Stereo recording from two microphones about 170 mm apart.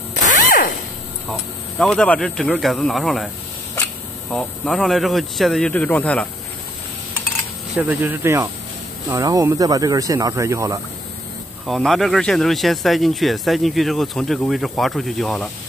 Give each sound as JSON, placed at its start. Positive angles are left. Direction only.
{"t": 0.5, "sound": "a sound", "side_deg": 50}
{"t": 1.3, "sound": "speech", "side_deg": 0}
{"t": 4.3, "sound": "speech", "side_deg": 0}
{"t": 7.7, "sound": "speech", "side_deg": -10}
{"t": 11.6, "sound": "speech", "side_deg": 0}